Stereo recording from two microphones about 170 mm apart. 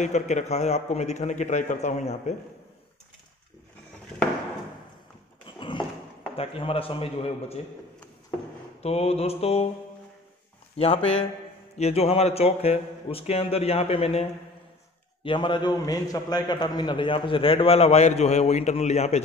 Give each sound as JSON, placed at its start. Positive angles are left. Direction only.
{"t": 0.0, "sound": "a man's voice", "side_deg": 45}
{"t": 5.6, "sound": "horse", "side_deg": 30}
{"t": 6.3, "sound": "a man's voice", "side_deg": 35}
{"t": 8.8, "sound": "a man's voice", "side_deg": 35}
{"t": 10.8, "sound": "a man's voice", "side_deg": 35}
{"t": 15.2, "sound": "a man's voice", "side_deg": 30}